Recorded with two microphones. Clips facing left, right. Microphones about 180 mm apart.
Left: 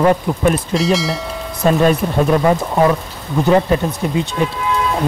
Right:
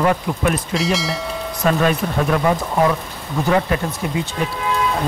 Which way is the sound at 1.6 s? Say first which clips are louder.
Left 4 dB; 25° left (ahead or behind).